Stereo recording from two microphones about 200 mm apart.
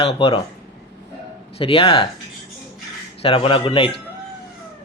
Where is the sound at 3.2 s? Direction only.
30° left (ahead or behind).